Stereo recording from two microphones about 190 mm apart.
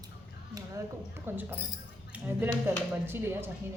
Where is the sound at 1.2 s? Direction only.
10° right (ahead or behind).